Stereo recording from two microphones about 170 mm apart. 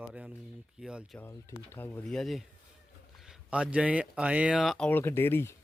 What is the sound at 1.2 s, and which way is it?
Speech, 15° left (ahead or behind).